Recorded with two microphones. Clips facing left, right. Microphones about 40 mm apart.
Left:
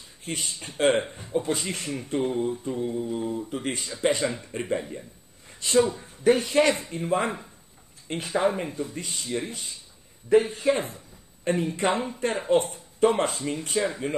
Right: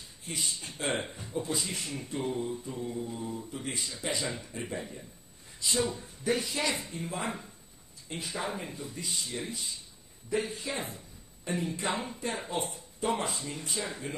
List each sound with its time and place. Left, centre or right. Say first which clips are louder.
0.2 s speech: left 4 dB; left
3.4 s speech: left 6 dB; left
5.6 s speech: left 9 dB; left
8.6 s speech: left 9 dB; left
8.9 s speech: left 6 dB; left